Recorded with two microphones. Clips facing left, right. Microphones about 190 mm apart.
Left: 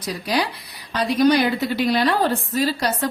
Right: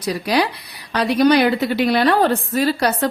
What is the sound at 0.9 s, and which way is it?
A woman's voice, 70° right (ahead or behind).